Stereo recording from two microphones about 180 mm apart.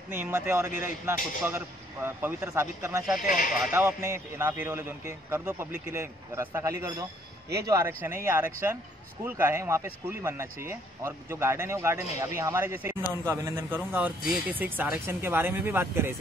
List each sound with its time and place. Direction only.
0.1 s a man's voice: 15° right (ahead or behind)
3.2 s speech: 50° left (ahead or behind)
3.7 s a man's voice: 15° right (ahead or behind)